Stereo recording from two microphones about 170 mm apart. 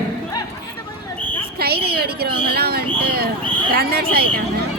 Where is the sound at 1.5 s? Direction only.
70° right (ahead or behind).